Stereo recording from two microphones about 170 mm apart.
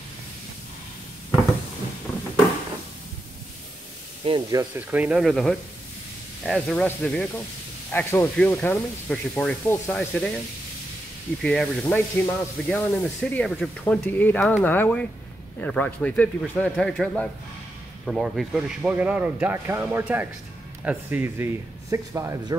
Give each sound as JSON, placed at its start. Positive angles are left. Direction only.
{"t": 4.2, "sound": "speech", "side_deg": -25}
{"t": 4.7, "sound": "speech", "side_deg": -10}
{"t": 7.9, "sound": "speech", "side_deg": 15}
{"t": 11.4, "sound": "speech", "side_deg": 5}